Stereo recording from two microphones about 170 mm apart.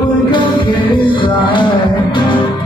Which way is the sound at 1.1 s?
30° left (ahead or behind).